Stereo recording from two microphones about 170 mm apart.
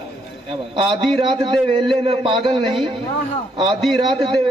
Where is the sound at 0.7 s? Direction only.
30° right (ahead or behind).